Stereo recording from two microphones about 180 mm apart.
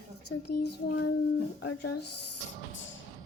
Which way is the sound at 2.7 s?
90° left.